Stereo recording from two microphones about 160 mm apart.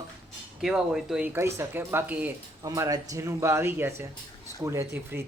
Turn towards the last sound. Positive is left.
turn(degrees=-15)  # may be behind; listen again after turning